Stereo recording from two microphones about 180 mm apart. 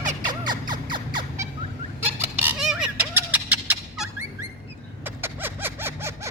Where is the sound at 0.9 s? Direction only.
25° right (ahead or behind).